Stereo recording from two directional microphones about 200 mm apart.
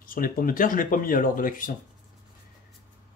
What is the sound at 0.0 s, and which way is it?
Speech, 45° left (ahead or behind).